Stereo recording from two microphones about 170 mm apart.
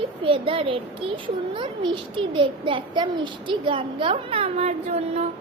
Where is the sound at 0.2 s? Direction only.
30° right (ahead or behind).